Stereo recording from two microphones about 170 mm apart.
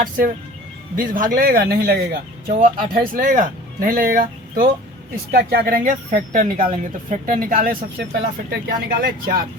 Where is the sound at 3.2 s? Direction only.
50° right (ahead or behind).